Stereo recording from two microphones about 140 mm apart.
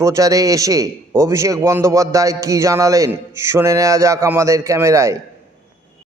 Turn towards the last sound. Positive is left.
turn(degrees=-20)  # may be behind; listen again after turning